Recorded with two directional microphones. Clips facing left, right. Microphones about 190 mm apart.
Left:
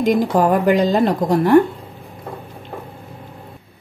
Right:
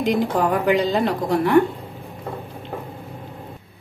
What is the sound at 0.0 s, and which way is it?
A woman's voice, 45° left (ahead or behind).